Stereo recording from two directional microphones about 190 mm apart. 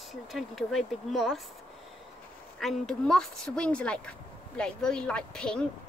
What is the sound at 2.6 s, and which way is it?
A woman's voice, centre (ahead or behind).